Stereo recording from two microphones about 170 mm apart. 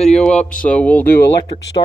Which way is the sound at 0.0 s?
5° left (ahead or behind).